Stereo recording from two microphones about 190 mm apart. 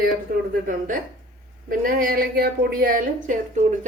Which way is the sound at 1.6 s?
50° right (ahead or behind).